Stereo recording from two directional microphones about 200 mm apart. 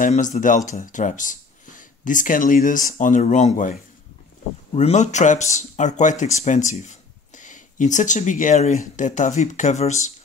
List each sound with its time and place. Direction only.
0.0 s speech: 40° left (ahead or behind)
4.7 s speech: 35° left (ahead or behind)